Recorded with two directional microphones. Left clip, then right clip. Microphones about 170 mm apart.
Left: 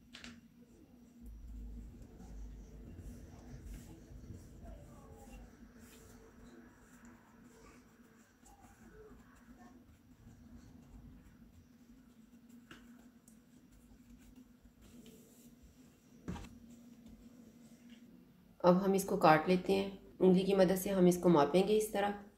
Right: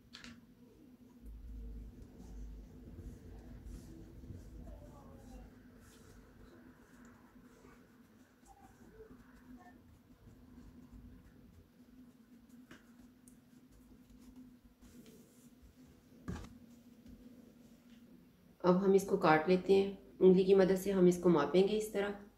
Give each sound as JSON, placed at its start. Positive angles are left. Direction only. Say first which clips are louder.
{"t": 18.6, "sound": "speech", "louder": "even", "side_deg": 45}